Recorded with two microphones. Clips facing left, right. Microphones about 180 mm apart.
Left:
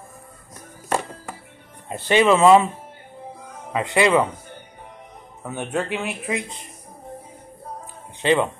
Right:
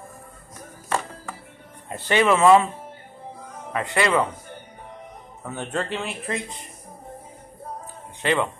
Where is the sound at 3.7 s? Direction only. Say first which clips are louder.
Left 4 dB; 20° left (ahead or behind).